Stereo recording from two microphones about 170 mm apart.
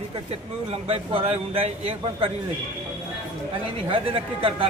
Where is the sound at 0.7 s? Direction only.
35° right (ahead or behind).